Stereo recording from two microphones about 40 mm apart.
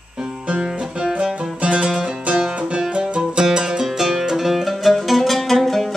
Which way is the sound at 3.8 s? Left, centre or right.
Centre.